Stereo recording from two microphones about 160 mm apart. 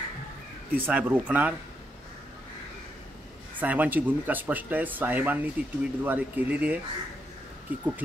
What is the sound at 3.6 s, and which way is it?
Speech, 10° right (ahead or behind).